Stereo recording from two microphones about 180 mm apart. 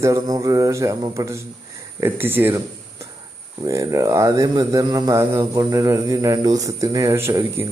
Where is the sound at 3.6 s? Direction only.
15° right (ahead or behind).